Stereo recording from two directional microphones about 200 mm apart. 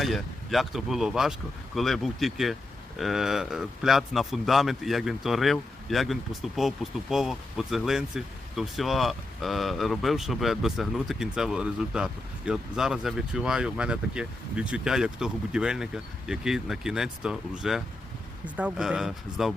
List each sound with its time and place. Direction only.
0.0 s speech: centre (ahead or behind)